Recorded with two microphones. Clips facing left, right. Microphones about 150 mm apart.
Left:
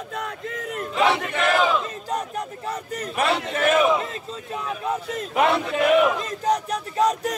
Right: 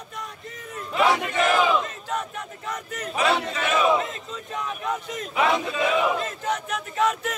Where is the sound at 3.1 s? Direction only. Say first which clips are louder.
Even; 55° left (ahead or behind).